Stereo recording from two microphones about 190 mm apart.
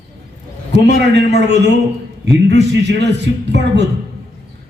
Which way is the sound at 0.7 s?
65° right (ahead or behind).